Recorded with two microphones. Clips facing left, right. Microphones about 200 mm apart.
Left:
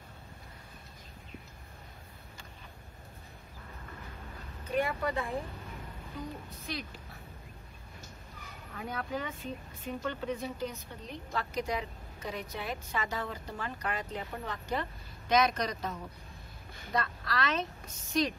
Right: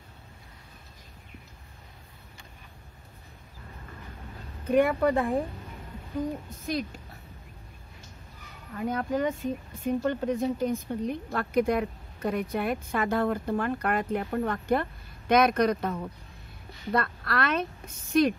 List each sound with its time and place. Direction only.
4.6 s speech: 55° right (ahead or behind)
6.6 s speech: 45° right (ahead or behind)
8.7 s speech: 45° right (ahead or behind)